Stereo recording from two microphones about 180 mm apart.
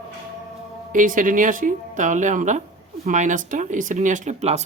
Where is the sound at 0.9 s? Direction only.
50° right (ahead or behind).